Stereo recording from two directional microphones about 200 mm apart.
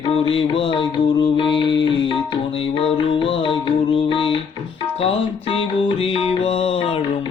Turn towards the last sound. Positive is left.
turn(degrees=30)  # may be behind; listen again after turning